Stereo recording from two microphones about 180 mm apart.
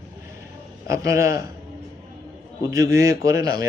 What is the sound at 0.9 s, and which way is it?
Speech, 15° right (ahead or behind).